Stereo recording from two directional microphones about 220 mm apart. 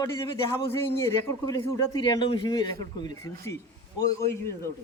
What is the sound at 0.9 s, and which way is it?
A man's voice, 15° left (ahead or behind).